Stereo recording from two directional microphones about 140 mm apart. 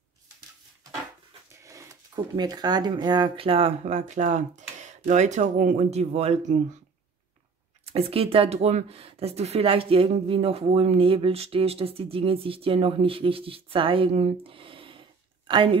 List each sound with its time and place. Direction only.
1.6 s a sound: 20° right (ahead or behind)
2.1 s speech: 30° right (ahead or behind)
3.8 s speech: 55° right (ahead or behind)
7.8 s speech: 45° right (ahead or behind)